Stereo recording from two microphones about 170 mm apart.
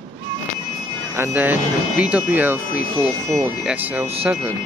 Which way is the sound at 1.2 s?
10° right (ahead or behind).